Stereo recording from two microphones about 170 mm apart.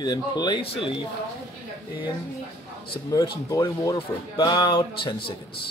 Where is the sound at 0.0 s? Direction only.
25° left (ahead or behind).